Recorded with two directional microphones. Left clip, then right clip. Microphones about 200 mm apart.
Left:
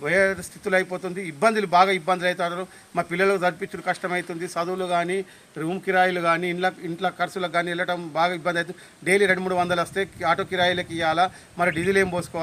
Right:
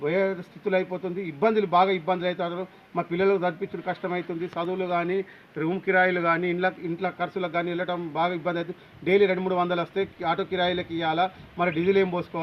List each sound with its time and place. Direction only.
0.0 s a man's voice: 20° left (ahead or behind)